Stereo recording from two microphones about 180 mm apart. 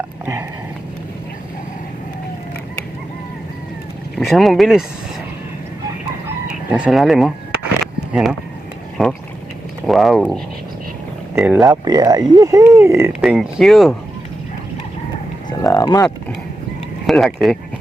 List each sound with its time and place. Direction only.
4.3 s speech: centre (ahead or behind)
6.7 s speech: 5° right (ahead or behind)
11.3 s speech: 10° right (ahead or behind)
11.6 s speech: 20° right (ahead or behind)
13.2 s speech: centre (ahead or behind)
15.4 s a sound: 20° left (ahead or behind)
17.1 s speech: centre (ahead or behind)